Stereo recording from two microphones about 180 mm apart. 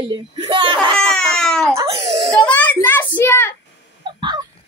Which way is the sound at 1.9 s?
35° right (ahead or behind).